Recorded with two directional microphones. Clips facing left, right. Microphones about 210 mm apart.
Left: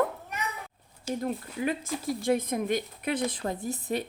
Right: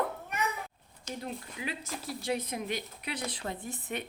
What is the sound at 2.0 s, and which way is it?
A woman's voice, 50° left (ahead or behind).